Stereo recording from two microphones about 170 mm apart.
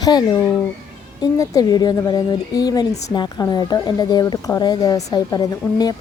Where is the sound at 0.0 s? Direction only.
25° left (ahead or behind).